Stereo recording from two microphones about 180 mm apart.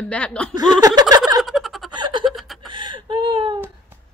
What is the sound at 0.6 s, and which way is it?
Speech, 20° right (ahead or behind).